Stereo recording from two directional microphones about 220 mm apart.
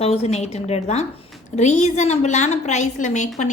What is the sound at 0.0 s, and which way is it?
A woman's voice, 25° left (ahead or behind).